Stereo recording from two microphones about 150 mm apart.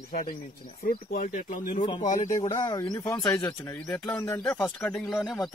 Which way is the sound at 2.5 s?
25° left (ahead or behind).